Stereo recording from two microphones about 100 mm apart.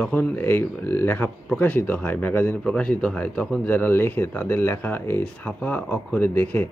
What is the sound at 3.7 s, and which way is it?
Speech, 20° left (ahead or behind).